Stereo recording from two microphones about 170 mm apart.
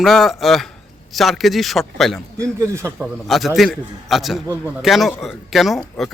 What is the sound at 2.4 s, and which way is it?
Speech, 15° right (ahead or behind).